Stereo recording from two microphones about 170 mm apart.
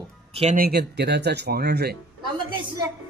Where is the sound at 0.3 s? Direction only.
35° right (ahead or behind).